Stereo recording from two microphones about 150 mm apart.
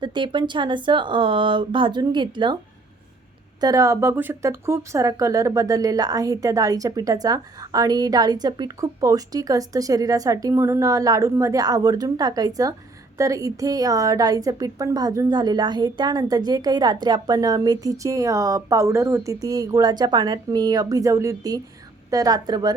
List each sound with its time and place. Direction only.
0.0 s speech: 30° right (ahead or behind)
3.6 s speech: 20° right (ahead or behind)